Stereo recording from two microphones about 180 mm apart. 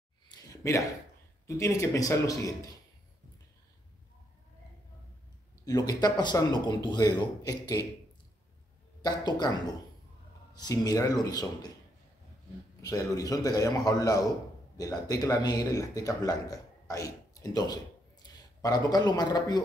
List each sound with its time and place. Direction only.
0.5 s a sound: 20° left (ahead or behind)
1.6 s a man's voice: 20° left (ahead or behind)
5.7 s a man's voice: 20° left (ahead or behind)
9.0 s a man's voice: 25° left (ahead or behind)
10.5 s a man's voice: 20° left (ahead or behind)
12.8 s a man's voice: 20° left (ahead or behind)